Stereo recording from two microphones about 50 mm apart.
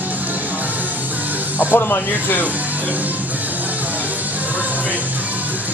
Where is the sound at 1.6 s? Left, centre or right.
Left.